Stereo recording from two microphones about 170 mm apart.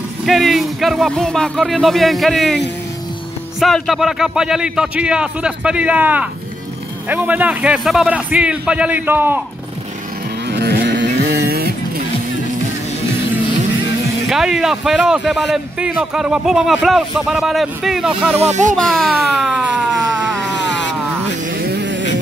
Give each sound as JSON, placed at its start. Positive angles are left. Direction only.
{"t": 0.2, "sound": "a man's voice", "side_deg": 0}
{"t": 10.5, "sound": "vehicle", "side_deg": -70}
{"t": 14.3, "sound": "speech", "side_deg": 0}
{"t": 18.3, "sound": "speech", "side_deg": -40}
{"t": 18.9, "sound": "speech", "side_deg": 0}
{"t": 19.4, "sound": "siren", "side_deg": -5}
{"t": 20.5, "sound": "a sound", "side_deg": 90}
{"t": 21.7, "sound": "a sound", "side_deg": -90}